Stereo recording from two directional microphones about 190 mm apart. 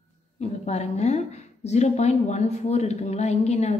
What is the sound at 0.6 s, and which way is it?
Speech, 35° left (ahead or behind).